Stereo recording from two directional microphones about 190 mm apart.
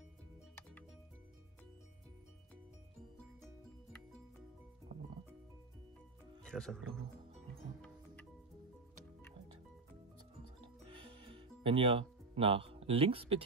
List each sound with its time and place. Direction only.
4.9 s music: 35° right (ahead or behind)
6.4 s speech: centre (ahead or behind)
11.0 s music: 30° right (ahead or behind)